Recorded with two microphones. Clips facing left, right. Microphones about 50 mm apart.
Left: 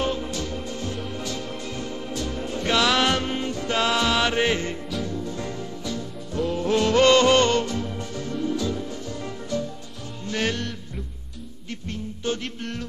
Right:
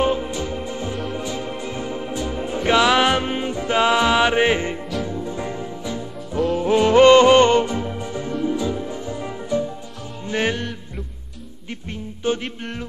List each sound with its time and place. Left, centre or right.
0.0 s music: centre
11.9 s music: centre